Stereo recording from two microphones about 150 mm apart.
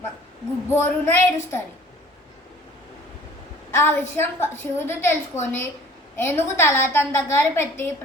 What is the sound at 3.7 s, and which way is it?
A woman's voice, 15° left (ahead or behind).